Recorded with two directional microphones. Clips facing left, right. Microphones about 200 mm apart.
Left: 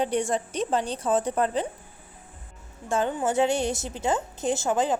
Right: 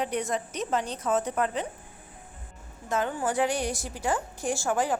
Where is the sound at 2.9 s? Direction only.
25° left (ahead or behind).